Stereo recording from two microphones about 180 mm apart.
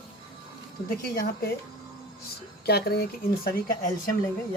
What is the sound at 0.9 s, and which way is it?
Speech, 55° left (ahead or behind).